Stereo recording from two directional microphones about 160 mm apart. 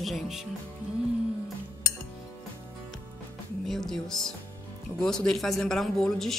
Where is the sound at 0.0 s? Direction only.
Centre (ahead or behind).